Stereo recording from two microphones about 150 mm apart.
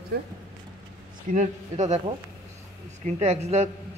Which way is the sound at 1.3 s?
55° right (ahead or behind).